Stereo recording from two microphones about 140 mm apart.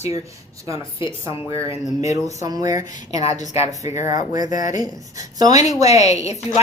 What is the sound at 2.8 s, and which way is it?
Speech, 65° left (ahead or behind).